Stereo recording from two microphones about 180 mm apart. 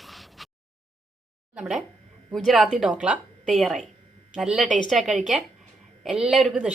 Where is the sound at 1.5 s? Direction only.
Centre (ahead or behind).